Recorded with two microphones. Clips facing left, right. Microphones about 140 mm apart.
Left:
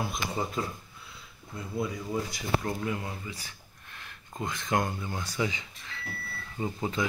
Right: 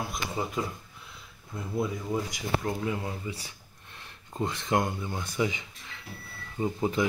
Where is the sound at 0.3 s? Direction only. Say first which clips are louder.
Right 3 dB; centre (ahead or behind).